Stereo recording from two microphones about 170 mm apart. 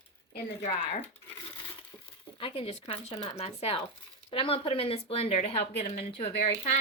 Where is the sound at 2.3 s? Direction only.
35° left (ahead or behind).